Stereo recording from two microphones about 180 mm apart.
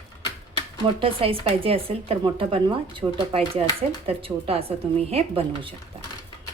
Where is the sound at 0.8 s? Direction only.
30° right (ahead or behind).